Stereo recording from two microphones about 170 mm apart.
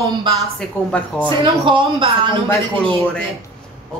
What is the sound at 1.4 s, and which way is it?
Speech, 30° right (ahead or behind).